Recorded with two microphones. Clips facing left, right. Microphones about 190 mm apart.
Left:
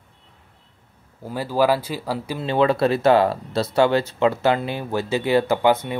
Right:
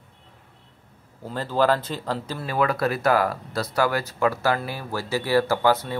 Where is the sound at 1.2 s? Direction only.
10° left (ahead or behind).